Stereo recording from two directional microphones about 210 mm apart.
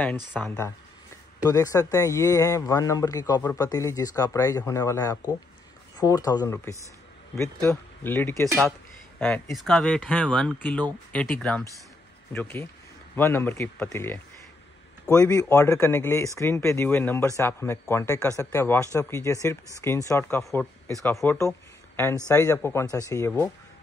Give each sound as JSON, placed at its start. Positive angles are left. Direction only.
{"t": 0.4, "sound": "a man's voice", "side_deg": 15}